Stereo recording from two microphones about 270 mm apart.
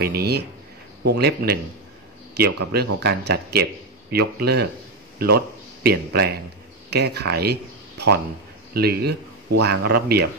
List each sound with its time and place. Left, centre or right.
0.0 s speech: right
5.9 s speech: right
8.7 s speech: right